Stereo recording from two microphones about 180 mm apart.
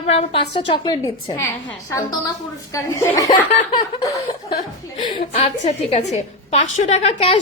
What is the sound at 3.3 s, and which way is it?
Speech, 40° left (ahead or behind).